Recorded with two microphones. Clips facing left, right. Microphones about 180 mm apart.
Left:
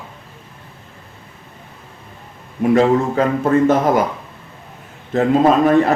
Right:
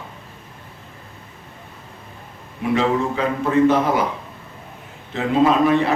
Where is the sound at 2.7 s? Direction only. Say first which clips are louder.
Left 5 dB; 45° left (ahead or behind).